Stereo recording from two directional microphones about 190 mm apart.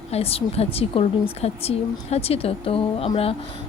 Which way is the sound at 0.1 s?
30° left (ahead or behind).